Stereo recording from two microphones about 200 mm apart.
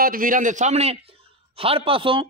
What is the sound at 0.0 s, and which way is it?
A man's voice, 45° right (ahead or behind).